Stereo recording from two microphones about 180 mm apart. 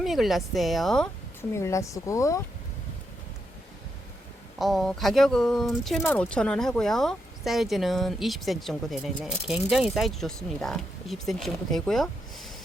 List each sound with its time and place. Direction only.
0.0 s speech: centre (ahead or behind)
1.4 s speech: 15° left (ahead or behind)
4.5 s speech: centre (ahead or behind)